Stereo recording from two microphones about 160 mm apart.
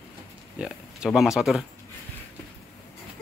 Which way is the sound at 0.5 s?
5° right (ahead or behind).